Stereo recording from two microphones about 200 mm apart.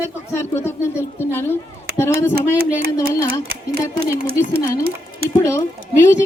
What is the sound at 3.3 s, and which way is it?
Speech, 50° right (ahead or behind).